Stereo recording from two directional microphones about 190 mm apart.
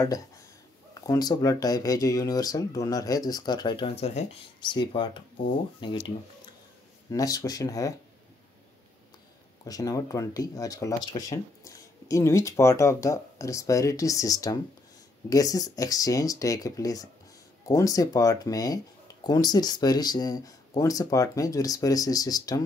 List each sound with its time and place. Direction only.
1.0 s speech: 20° left (ahead or behind); by 4.4 s 35° left (ahead or behind)
4.6 s speech: 25° left (ahead or behind)
9.7 s speech: 20° left (ahead or behind)